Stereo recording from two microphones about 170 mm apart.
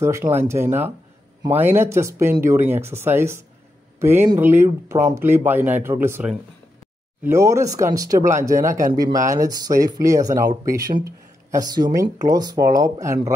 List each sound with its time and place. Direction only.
0.0 s speech: 15° right (ahead or behind)